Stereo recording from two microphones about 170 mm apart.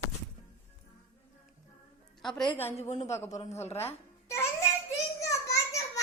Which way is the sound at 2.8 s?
45° left (ahead or behind).